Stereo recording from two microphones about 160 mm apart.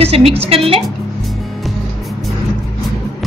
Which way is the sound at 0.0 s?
40° right (ahead or behind).